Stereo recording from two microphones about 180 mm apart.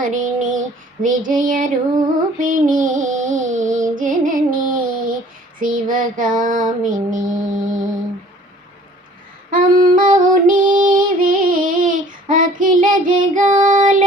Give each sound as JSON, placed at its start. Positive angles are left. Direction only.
{"t": 0.0, "sound": "child singing", "side_deg": -45}
{"t": 1.0, "sound": "female singing", "side_deg": -50}
{"t": 3.9, "sound": "music", "side_deg": -45}
{"t": 5.5, "sound": "child singing", "side_deg": -50}
{"t": 9.5, "sound": "female singing", "side_deg": -50}